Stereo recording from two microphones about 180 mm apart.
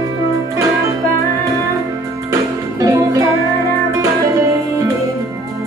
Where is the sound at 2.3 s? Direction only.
20° right (ahead or behind).